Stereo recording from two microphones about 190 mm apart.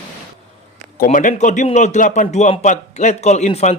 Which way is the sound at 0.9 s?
45° left (ahead or behind).